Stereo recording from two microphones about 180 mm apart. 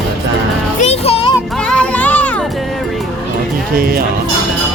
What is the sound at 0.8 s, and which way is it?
Music, 35° left (ahead or behind).